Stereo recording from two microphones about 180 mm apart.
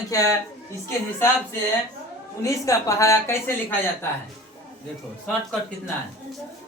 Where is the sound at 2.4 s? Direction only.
15° left (ahead or behind).